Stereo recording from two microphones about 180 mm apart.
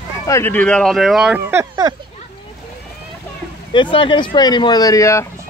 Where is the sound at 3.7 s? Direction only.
30° left (ahead or behind).